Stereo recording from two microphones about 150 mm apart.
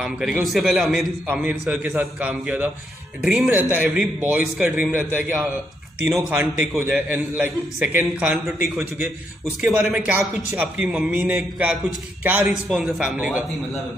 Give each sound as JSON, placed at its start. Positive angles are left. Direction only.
{"t": 0.0, "sound": "a man's voice", "side_deg": -5}
{"t": 8.6, "sound": "a man's voice", "side_deg": -20}
{"t": 12.6, "sound": "a man's voice", "side_deg": 0}